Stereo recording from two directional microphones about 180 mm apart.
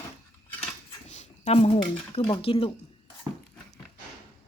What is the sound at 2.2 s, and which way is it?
Speech, 30° left (ahead or behind).